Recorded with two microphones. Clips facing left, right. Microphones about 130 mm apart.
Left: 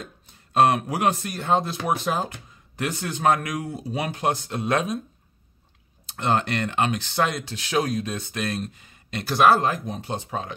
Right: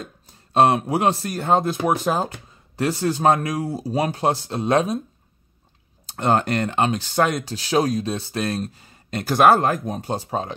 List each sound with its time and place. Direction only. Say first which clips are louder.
0.3 s speech: right 2 dB; 30° right (ahead or behind)
6.0 s speech: right 4 dB; 40° right (ahead or behind)